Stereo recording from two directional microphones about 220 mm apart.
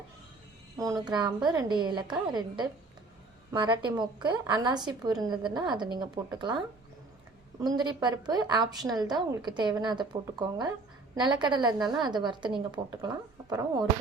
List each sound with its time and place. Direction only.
0.8 s a woman's voice: 15° right (ahead or behind)
3.5 s a woman's voice: 20° right (ahead or behind)
7.6 s a woman's voice: 20° right (ahead or behind)